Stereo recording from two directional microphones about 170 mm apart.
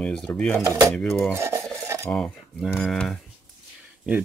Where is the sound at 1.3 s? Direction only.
15° right (ahead or behind).